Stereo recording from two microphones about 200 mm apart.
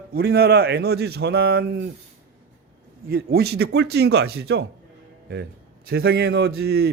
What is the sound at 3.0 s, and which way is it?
Speech, 50° right (ahead or behind).